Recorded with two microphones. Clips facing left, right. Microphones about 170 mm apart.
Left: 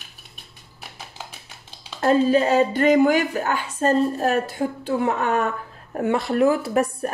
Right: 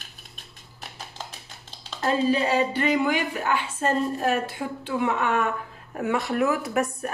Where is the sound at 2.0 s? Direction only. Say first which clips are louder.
Left 5 dB; 45° left (ahead or behind).